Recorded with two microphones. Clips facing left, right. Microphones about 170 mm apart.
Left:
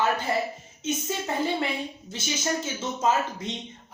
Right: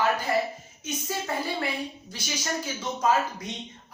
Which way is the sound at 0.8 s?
25° left (ahead or behind).